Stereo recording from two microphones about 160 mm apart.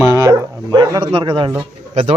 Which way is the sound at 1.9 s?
40° right (ahead or behind).